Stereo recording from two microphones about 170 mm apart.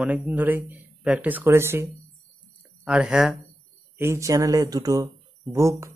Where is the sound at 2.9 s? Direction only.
5° right (ahead or behind).